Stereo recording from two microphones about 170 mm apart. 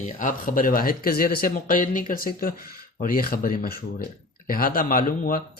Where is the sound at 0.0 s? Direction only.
50° left (ahead or behind).